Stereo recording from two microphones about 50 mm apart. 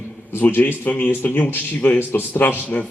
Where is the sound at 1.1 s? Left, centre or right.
Left.